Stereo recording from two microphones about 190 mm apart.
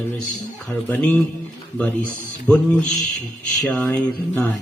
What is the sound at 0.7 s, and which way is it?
Speech, 10° left (ahead or behind).